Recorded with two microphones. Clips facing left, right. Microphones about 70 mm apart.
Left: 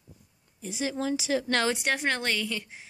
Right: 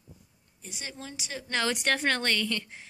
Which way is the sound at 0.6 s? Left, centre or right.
Left.